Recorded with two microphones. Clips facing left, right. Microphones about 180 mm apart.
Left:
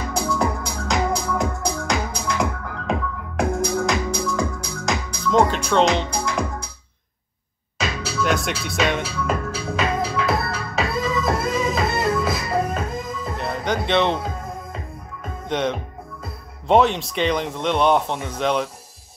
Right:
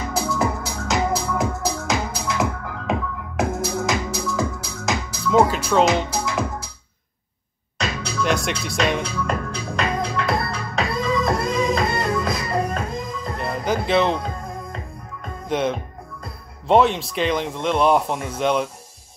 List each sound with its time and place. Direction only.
0.1 s music: centre (ahead or behind)
8.0 s music: centre (ahead or behind)
15.4 s speech: 5° right (ahead or behind)